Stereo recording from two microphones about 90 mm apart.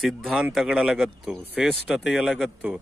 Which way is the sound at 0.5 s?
Centre (ahead or behind).